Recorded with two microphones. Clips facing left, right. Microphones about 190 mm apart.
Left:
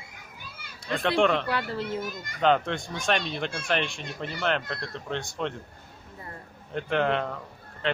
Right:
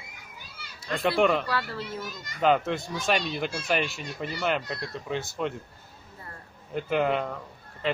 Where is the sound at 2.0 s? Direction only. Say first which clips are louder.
Left 3 dB; 55° left (ahead or behind).